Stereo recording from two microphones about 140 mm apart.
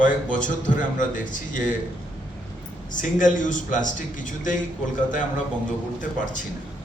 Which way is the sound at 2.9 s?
65° left (ahead or behind).